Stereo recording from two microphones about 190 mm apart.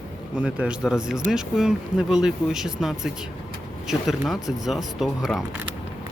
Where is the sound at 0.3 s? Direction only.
5° right (ahead or behind).